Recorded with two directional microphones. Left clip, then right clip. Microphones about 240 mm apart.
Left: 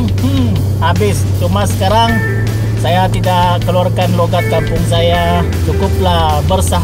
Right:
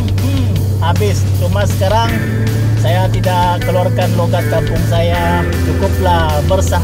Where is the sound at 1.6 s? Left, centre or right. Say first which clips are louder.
Left 2 dB; left.